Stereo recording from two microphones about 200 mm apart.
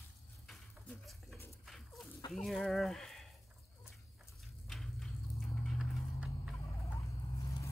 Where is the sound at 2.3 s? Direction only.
Centre (ahead or behind).